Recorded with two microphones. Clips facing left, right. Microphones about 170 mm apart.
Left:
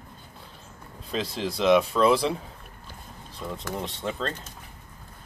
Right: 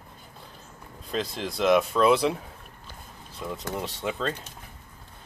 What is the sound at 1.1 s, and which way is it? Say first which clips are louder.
Speech: left 1 dB; centre (ahead or behind).